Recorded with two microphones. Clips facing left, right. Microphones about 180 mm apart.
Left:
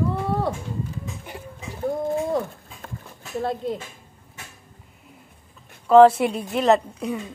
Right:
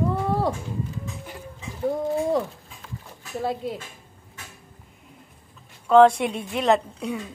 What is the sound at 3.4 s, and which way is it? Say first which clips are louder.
Speech: left 2 dB; 5° right (ahead or behind).